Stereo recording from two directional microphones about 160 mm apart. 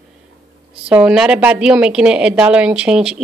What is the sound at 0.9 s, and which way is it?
A woman's voice, 5° right (ahead or behind).